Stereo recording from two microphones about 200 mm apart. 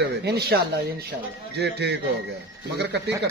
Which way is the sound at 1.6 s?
60° right (ahead or behind).